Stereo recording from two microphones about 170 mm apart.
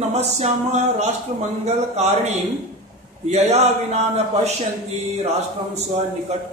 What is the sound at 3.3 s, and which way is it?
Speech, 40° right (ahead or behind).